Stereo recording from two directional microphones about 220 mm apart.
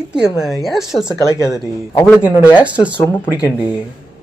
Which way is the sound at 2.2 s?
5° right (ahead or behind).